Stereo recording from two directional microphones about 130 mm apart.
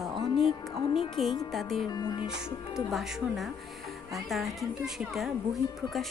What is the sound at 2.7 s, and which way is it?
A woman's voice, 5° right (ahead or behind).